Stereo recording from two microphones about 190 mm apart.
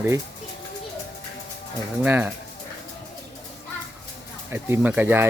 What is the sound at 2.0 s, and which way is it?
Speech, 10° right (ahead or behind).